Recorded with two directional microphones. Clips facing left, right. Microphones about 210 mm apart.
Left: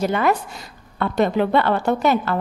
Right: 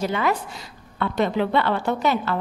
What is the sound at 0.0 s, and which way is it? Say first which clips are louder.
A woman's voice: left 4 dB; 50° left (ahead or behind).